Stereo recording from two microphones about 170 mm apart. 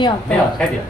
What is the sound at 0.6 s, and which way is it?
Speech, 5° left (ahead or behind).